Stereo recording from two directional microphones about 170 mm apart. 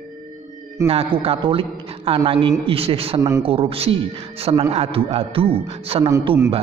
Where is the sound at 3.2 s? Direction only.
20° right (ahead or behind).